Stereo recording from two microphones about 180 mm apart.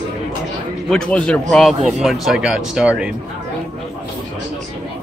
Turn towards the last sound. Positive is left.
turn(degrees=-5)  # may be behind; listen again after turning